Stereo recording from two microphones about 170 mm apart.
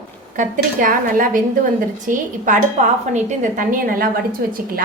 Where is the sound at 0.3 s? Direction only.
50° right (ahead or behind).